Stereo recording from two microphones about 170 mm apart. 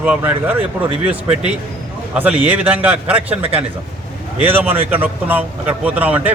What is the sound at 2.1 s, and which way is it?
A man's voice, 10° right (ahead or behind).